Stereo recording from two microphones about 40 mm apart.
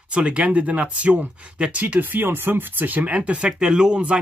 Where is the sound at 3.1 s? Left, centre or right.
Right.